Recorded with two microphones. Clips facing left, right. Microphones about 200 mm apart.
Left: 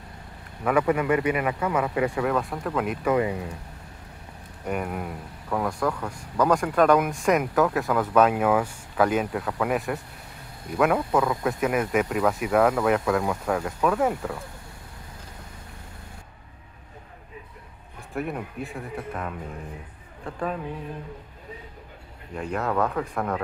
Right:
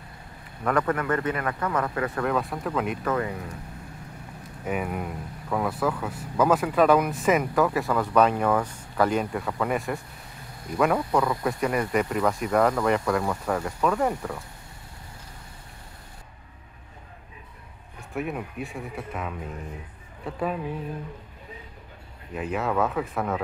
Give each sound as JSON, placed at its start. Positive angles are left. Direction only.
{"t": 0.7, "sound": "a man's voice", "side_deg": 10}
{"t": 2.2, "sound": "speech", "side_deg": 0}
{"t": 3.1, "sound": "a man's voice", "side_deg": 15}
{"t": 4.6, "sound": "speech", "side_deg": 0}
{"t": 18.1, "sound": "speech", "side_deg": 0}
{"t": 22.3, "sound": "speech", "side_deg": -5}